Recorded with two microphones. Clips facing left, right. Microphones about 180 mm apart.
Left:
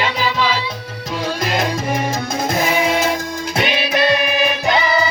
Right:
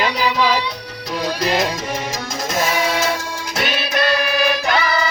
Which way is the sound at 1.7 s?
55° left (ahead or behind).